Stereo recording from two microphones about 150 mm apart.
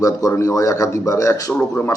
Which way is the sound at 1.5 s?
5° left (ahead or behind).